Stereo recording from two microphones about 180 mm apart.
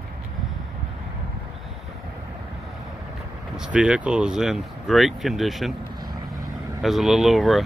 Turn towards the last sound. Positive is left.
turn(degrees=0)  # may be behind; listen again after turning